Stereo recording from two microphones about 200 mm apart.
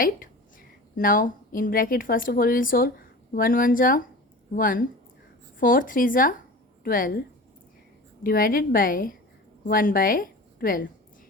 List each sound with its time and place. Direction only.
0.0 s a woman's voice: 45° left (ahead or behind)
8.2 s a woman's voice: 45° left (ahead or behind)